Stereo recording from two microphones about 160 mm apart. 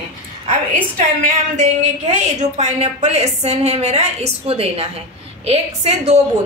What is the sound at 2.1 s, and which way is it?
A woman's voice, 45° right (ahead or behind).